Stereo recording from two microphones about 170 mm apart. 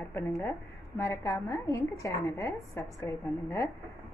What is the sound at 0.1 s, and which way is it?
A woman's voice, 15° left (ahead or behind).